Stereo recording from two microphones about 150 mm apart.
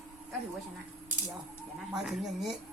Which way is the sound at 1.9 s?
5° right (ahead or behind).